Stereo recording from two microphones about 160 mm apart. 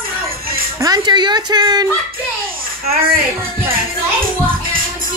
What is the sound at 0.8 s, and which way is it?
A child's voice, 25° right (ahead or behind).